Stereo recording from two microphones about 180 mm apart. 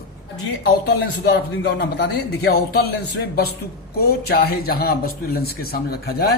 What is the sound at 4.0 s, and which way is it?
A man's voice, 60° left (ahead or behind).